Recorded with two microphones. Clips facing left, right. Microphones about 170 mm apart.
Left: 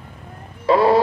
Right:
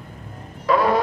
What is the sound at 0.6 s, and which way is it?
Vehicle, 30° left (ahead or behind).